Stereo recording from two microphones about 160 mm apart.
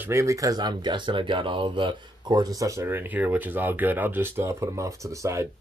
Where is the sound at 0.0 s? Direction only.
20° right (ahead or behind).